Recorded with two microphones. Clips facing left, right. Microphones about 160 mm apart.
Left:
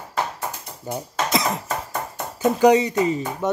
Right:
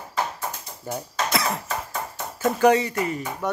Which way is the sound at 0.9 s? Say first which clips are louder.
Left 3 dB; 20° left (ahead or behind).